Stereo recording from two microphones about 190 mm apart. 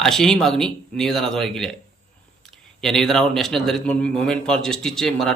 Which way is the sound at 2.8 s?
Centre (ahead or behind).